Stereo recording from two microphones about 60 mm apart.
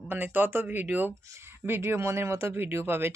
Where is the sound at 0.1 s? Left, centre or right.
Right.